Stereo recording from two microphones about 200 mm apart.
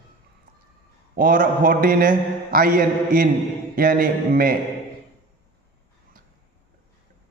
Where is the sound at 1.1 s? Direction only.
45° right (ahead or behind).